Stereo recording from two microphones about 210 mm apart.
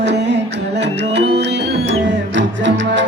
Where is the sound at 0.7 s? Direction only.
55° right (ahead or behind).